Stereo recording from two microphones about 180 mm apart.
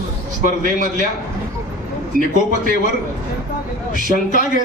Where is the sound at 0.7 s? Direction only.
45° right (ahead or behind).